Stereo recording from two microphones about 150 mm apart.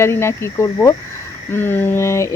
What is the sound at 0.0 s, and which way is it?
Speech, 15° left (ahead or behind).